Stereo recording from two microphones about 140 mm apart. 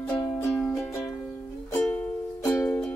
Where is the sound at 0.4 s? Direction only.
15° left (ahead or behind).